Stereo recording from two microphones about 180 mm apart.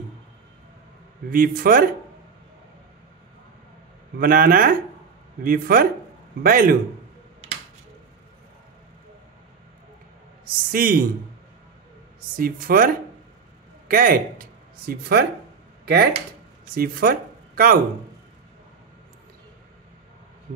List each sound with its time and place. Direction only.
1.3 s speech: 55° right (ahead or behind)
4.2 s speech: 55° right (ahead or behind)
10.7 s speech: 50° right (ahead or behind)
12.2 s speech: 55° right (ahead or behind)